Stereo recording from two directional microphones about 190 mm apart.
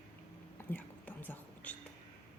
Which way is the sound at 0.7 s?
10° left (ahead or behind).